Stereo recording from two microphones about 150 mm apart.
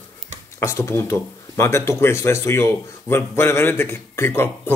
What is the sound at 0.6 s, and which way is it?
Speech, 20° left (ahead or behind).